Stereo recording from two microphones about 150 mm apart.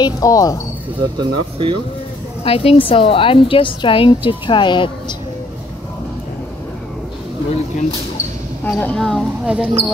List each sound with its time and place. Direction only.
0.0 s speech: 25° left (ahead or behind)
1.1 s speech: 30° right (ahead or behind)
2.4 s a woman's voice: 40° left (ahead or behind)
8.6 s speech: 10° left (ahead or behind)